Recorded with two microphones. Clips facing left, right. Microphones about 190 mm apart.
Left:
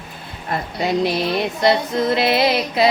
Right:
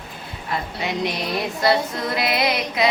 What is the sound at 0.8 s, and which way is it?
Female singing, 35° left (ahead or behind).